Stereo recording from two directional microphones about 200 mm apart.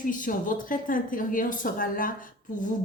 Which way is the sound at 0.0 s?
40° left (ahead or behind).